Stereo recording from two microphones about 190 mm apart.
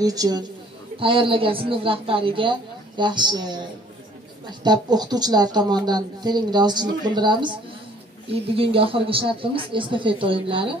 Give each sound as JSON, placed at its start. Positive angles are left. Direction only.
{"t": 0.0, "sound": "speech", "side_deg": -20}